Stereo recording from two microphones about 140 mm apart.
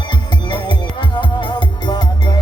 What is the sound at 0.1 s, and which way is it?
Music, 30° left (ahead or behind).